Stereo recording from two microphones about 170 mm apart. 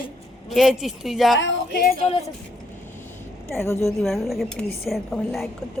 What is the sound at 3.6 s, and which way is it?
Speech, 15° left (ahead or behind).